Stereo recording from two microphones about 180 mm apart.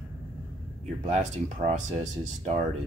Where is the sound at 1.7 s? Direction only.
40° right (ahead or behind).